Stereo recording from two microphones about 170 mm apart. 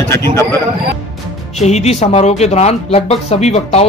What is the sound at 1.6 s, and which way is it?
Speech, 40° left (ahead or behind).